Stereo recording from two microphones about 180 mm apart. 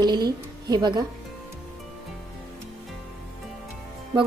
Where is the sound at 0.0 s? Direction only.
25° right (ahead or behind).